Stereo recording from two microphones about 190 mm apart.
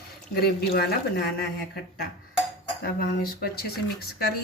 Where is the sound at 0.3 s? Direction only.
55° left (ahead or behind).